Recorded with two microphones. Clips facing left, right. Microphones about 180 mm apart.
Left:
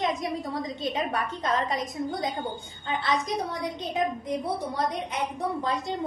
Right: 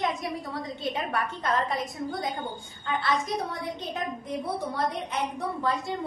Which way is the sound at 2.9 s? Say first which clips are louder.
Even; 20° left (ahead or behind).